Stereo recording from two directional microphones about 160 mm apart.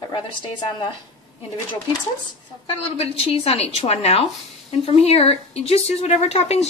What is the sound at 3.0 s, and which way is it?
Speech, 35° left (ahead or behind).